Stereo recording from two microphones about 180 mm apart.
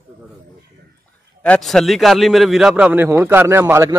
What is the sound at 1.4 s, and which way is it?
A man's voice, 5° left (ahead or behind).